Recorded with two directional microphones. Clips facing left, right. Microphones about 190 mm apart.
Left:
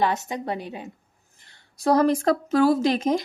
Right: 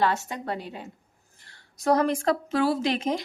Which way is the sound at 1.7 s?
35° left (ahead or behind).